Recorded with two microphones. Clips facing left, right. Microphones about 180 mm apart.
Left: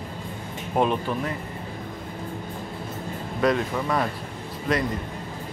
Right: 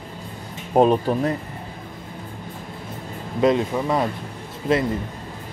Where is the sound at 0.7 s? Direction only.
40° right (ahead or behind).